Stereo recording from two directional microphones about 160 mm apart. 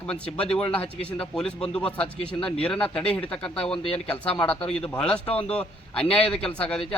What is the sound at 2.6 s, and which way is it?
A man's voice, 5° left (ahead or behind).